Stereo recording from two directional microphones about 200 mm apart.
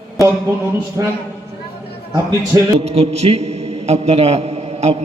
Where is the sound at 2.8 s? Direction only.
30° right (ahead or behind).